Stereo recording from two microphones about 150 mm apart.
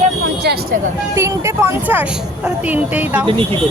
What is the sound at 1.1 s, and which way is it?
A woman's voice, 20° right (ahead or behind).